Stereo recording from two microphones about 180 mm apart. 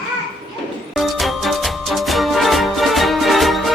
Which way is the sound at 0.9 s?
Centre (ahead or behind).